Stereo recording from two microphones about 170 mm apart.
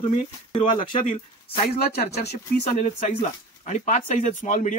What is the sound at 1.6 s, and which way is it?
Speech, 60° left (ahead or behind).